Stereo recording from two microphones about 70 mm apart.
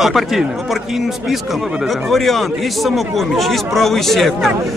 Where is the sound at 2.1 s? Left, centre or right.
Centre.